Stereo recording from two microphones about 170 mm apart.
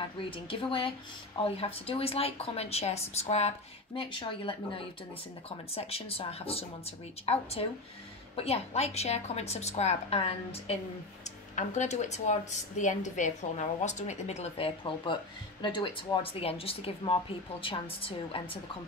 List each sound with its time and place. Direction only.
0.5 s speech: 30° left (ahead or behind)